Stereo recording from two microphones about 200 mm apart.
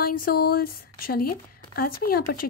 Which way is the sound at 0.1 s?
45° left (ahead or behind).